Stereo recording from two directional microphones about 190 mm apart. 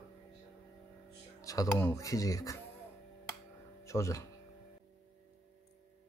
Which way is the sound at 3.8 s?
15° left (ahead or behind).